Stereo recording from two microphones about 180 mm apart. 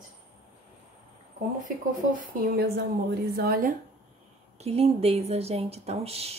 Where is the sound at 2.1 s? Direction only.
60° right (ahead or behind).